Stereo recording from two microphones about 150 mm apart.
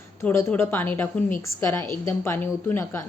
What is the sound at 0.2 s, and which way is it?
A woman's voice, 15° left (ahead or behind).